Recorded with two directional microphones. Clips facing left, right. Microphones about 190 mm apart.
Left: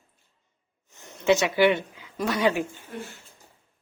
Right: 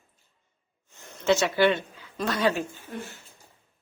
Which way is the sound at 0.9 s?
15° left (ahead or behind).